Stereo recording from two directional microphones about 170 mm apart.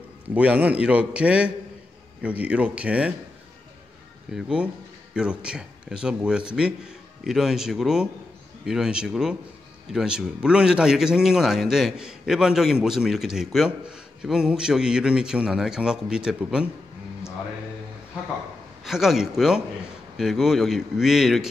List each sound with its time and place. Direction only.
0.3 s a man's voice: 5° right (ahead or behind)
4.3 s a man's voice: 5° right (ahead or behind)
18.9 s a man's voice: centre (ahead or behind)